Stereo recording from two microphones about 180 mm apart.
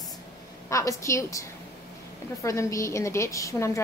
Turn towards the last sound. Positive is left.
turn(degrees=15)  # may be behind; listen again after turning